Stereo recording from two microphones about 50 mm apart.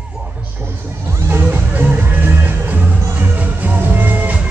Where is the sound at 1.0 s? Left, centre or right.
Right.